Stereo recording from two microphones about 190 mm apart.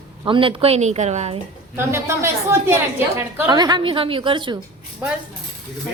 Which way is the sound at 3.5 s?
20° right (ahead or behind).